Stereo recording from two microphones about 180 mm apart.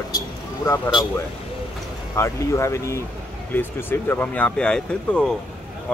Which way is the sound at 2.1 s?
15° left (ahead or behind).